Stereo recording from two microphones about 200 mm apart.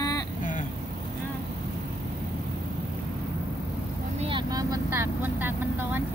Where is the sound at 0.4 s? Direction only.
40° left (ahead or behind).